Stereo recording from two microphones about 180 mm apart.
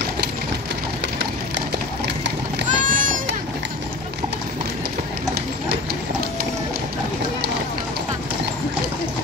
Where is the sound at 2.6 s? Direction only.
45° right (ahead or behind).